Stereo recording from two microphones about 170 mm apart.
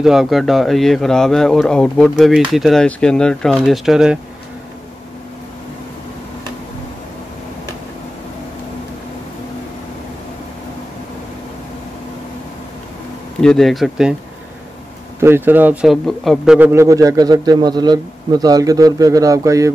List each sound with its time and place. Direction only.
0.0 s speech: centre (ahead or behind)
13.4 s speech: centre (ahead or behind)
15.1 s a man's voice: 15° right (ahead or behind)
16.5 s speech: 15° right (ahead or behind)